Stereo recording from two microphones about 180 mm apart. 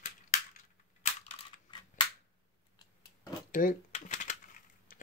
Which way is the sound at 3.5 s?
45° left (ahead or behind).